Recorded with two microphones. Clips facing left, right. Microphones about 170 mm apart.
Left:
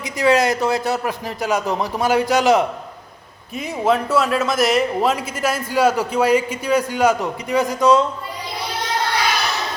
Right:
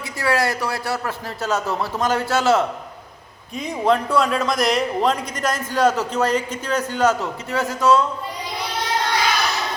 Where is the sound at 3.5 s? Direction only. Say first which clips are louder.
Even; 5° left (ahead or behind).